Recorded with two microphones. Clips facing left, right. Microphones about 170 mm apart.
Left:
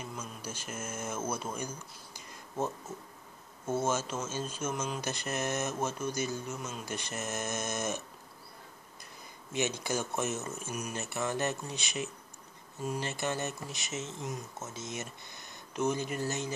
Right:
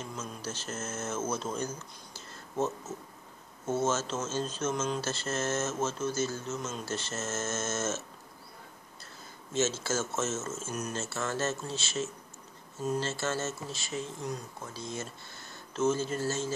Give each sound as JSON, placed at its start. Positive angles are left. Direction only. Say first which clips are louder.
{"t": 0.0, "sound": "speech", "louder": "right 2 dB", "side_deg": 10}
{"t": 9.5, "sound": "speech", "louder": "right 2 dB", "side_deg": 15}